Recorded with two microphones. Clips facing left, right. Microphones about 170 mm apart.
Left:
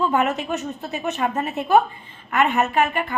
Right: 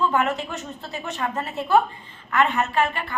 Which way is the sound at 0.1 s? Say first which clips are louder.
Left 3 dB; 15° left (ahead or behind).